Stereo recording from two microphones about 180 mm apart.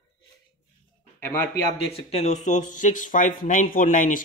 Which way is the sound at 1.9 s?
35° left (ahead or behind).